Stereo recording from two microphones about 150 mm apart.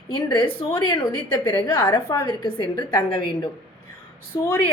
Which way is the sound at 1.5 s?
30° left (ahead or behind).